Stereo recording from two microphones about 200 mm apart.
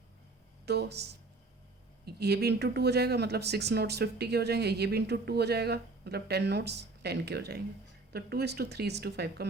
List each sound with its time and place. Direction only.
0.6 s speech: 55° right (ahead or behind)